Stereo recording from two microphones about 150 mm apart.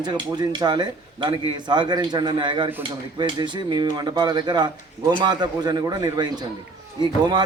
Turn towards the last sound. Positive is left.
turn(degrees=-30)  # may be behind; listen again after turning